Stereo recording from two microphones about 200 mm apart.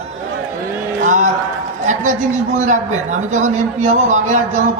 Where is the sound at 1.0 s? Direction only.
40° right (ahead or behind).